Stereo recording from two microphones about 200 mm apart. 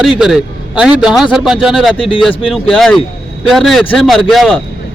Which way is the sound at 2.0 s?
25° left (ahead or behind).